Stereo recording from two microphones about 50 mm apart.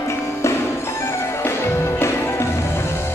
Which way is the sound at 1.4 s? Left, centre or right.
Left.